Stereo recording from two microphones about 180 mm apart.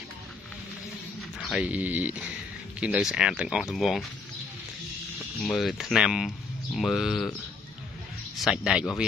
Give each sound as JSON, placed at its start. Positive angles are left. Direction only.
{"t": 1.4, "sound": "speech", "side_deg": -5}
{"t": 5.4, "sound": "speech", "side_deg": 0}
{"t": 8.4, "sound": "speech", "side_deg": -5}